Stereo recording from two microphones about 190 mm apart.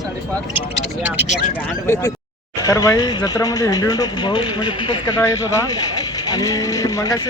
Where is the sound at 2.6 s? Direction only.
20° left (ahead or behind).